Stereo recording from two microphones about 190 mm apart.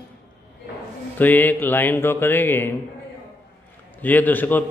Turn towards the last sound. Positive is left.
turn(degrees=10)  # may be behind; listen again after turning